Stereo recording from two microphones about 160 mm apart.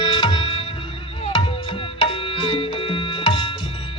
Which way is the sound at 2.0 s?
35° left (ahead or behind).